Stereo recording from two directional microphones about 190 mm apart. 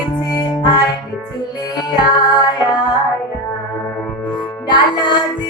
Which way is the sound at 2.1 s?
20° left (ahead or behind).